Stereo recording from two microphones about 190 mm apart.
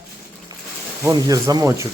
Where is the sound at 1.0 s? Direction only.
20° right (ahead or behind).